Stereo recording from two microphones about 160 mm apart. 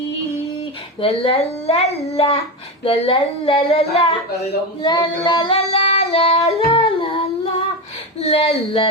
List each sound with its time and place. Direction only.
1.0 s speech: 35° left (ahead or behind)
6.7 s singing: 35° left (ahead or behind)
8.2 s speech: 40° left (ahead or behind)